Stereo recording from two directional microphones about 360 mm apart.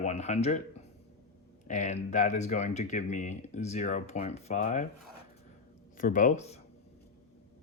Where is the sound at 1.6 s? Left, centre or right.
Left.